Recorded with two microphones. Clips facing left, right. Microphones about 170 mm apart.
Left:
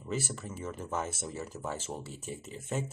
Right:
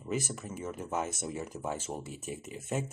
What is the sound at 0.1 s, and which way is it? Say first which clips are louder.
Speech: right 1 dB; 10° right (ahead or behind).